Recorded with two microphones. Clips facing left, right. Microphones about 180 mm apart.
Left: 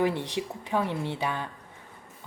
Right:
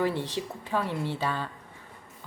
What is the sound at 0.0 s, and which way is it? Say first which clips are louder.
A woman's voice: left 1 dB; 15° left (ahead or behind).